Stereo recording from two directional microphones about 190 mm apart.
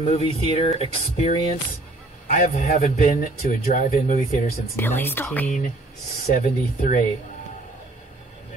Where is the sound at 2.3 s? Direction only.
45° left (ahead or behind).